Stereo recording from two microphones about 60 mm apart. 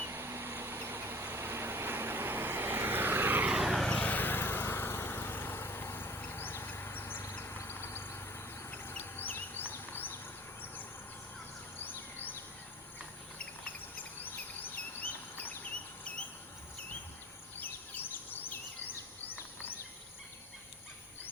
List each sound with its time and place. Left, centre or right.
0.0 s vehicle: right
3.5 s vehicle: centre
3.8 s vehicle: left
8.7 s insect: left
11.8 s insect: left
13.4 s a sound: left
14.2 s insect: left
16.1 s cricket: left
17.6 s insect: left